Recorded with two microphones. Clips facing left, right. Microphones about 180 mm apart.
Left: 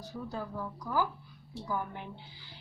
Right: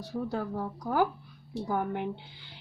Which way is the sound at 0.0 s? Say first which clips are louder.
Right 6 dB; 65° right (ahead or behind).